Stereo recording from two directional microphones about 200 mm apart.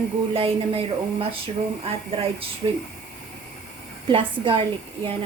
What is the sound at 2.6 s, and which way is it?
Speech, 25° right (ahead or behind).